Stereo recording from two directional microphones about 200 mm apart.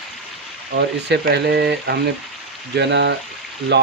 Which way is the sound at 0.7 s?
55° right (ahead or behind).